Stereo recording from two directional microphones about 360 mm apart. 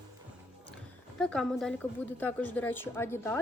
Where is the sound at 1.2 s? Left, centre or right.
Centre.